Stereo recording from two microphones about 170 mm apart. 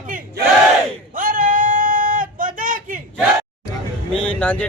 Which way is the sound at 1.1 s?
50° right (ahead or behind).